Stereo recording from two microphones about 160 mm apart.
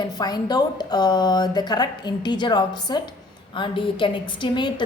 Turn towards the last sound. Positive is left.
turn(degrees=30)  # may be behind; listen again after turning